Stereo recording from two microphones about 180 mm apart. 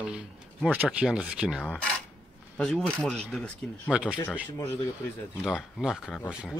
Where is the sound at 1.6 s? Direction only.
5° left (ahead or behind).